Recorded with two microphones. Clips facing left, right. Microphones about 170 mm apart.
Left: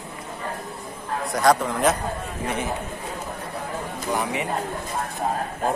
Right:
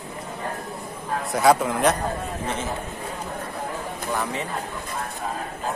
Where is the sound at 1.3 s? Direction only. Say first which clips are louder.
Right 1 dB; 5° right (ahead or behind).